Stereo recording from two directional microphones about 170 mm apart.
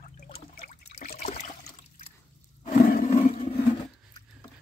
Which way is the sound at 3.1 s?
40° left (ahead or behind).